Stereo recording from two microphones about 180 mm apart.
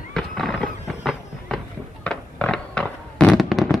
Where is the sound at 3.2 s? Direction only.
5° left (ahead or behind).